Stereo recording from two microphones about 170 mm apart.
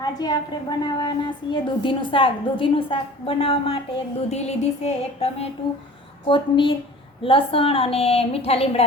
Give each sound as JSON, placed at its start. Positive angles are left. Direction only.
{"t": 0.0, "sound": "a woman's voice", "side_deg": 25}